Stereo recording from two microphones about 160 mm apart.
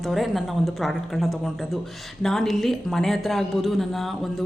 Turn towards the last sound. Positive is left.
turn(degrees=0)  # may be behind; listen again after turning